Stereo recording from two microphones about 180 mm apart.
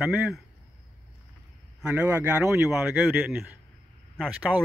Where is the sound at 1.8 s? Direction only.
5° right (ahead or behind).